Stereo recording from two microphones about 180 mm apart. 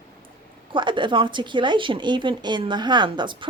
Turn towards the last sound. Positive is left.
turn(degrees=-25)  # may be behind; listen again after turning